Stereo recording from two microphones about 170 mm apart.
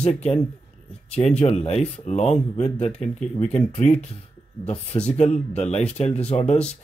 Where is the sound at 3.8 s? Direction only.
40° left (ahead or behind).